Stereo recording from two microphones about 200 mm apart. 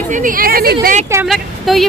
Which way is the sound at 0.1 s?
45° right (ahead or behind).